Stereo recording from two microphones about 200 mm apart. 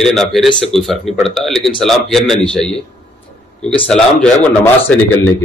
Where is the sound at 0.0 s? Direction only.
Centre (ahead or behind).